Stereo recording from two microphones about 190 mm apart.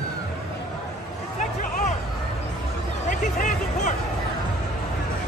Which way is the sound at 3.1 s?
45° left (ahead or behind).